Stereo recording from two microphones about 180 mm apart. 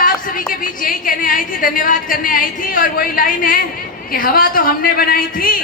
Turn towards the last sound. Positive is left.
turn(degrees=50)  # may be behind; listen again after turning